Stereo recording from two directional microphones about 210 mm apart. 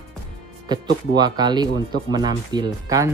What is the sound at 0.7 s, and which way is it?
Speech, 20° right (ahead or behind).